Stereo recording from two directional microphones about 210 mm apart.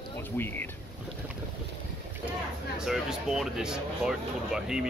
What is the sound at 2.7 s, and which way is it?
Speech, centre (ahead or behind).